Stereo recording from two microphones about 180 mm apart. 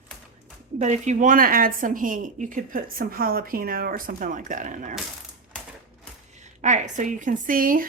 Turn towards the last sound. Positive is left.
turn(degrees=-50)  # may be behind; listen again after turning